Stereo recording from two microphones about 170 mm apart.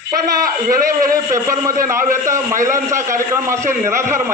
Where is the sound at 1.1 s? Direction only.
20° right (ahead or behind).